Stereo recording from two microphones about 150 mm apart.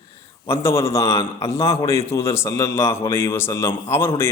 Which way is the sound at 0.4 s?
15° left (ahead or behind).